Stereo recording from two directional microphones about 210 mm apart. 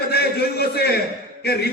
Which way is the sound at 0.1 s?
50° left (ahead or behind).